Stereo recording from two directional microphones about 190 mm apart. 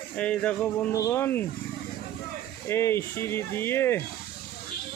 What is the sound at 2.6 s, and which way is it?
Speech, 15° left (ahead or behind).